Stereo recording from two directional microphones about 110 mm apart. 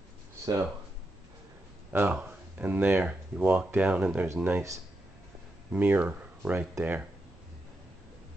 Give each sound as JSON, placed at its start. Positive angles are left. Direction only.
{"t": 1.9, "sound": "speech", "side_deg": -15}
{"t": 5.7, "sound": "speech", "side_deg": -15}